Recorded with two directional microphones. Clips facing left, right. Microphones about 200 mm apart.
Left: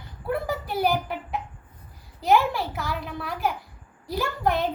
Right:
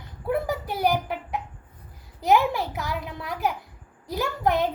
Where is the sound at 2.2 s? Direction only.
20° right (ahead or behind).